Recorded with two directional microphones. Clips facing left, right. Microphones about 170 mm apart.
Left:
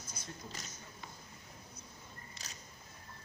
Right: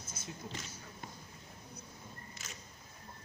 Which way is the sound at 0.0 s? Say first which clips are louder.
Right 1 dB; 25° right (ahead or behind).